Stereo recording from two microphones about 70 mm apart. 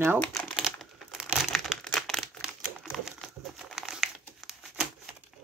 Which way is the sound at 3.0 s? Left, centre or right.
Centre.